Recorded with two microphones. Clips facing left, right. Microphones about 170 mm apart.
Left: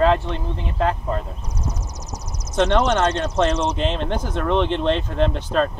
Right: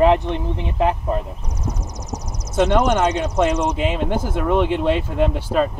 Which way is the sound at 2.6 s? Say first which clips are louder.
Right 1 dB; 10° right (ahead or behind).